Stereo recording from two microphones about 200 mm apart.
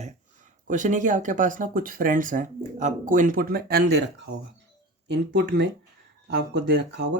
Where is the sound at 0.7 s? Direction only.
40° right (ahead or behind).